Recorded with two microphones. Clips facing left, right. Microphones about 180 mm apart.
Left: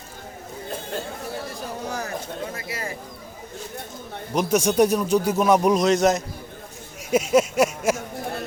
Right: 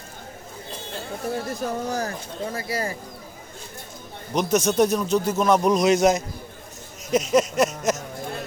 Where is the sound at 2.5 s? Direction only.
35° right (ahead or behind).